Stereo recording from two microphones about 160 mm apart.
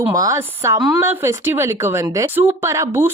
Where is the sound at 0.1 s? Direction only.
20° right (ahead or behind).